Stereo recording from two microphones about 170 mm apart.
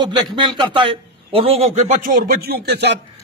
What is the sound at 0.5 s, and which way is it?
A man's voice, 30° right (ahead or behind).